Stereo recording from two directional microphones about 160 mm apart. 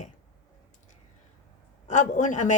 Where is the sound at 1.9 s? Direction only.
50° left (ahead or behind).